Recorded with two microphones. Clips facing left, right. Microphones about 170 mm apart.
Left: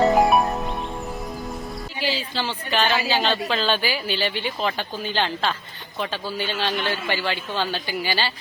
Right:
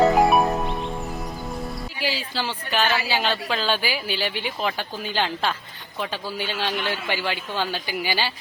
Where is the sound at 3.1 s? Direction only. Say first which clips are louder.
Left 2 dB; 10° right (ahead or behind).